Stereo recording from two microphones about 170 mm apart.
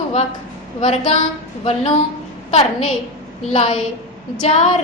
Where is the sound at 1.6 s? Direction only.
40° left (ahead or behind).